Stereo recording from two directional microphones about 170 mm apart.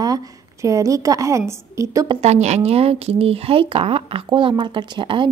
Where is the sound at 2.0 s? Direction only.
35° right (ahead or behind).